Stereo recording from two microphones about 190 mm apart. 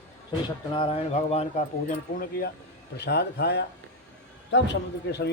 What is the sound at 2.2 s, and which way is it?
Speech, 50° left (ahead or behind).